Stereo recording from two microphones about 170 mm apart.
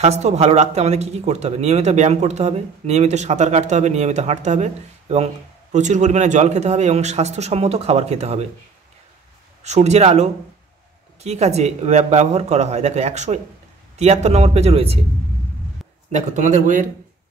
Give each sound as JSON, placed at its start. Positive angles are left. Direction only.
{"t": 0.0, "sound": "speech", "side_deg": -40}
{"t": 9.6, "sound": "speech", "side_deg": -40}
{"t": 16.1, "sound": "speech", "side_deg": -45}